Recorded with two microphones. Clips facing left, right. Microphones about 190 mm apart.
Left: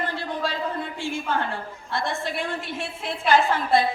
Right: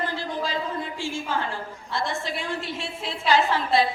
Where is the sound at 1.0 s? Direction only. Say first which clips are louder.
Left 3 dB; 60° left (ahead or behind).